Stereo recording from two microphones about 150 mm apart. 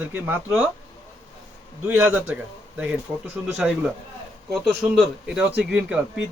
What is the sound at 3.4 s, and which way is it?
Speech, 10° right (ahead or behind).